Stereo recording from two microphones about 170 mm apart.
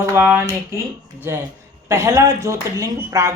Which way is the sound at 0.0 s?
15° right (ahead or behind).